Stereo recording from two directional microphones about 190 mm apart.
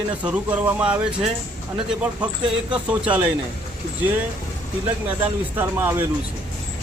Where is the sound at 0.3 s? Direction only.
5° right (ahead or behind).